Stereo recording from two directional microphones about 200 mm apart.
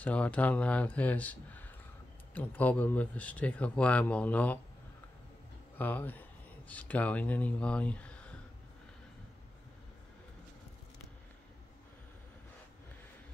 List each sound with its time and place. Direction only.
0.0 s speech: 5° left (ahead or behind)
5.8 s speech: 10° left (ahead or behind)